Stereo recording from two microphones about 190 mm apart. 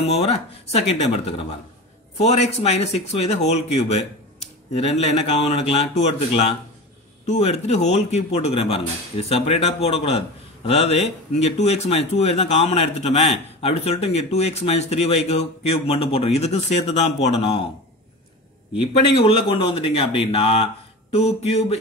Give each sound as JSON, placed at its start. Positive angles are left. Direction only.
{"t": 0.1, "sound": "speech", "side_deg": 35}
{"t": 18.8, "sound": "speech", "side_deg": 30}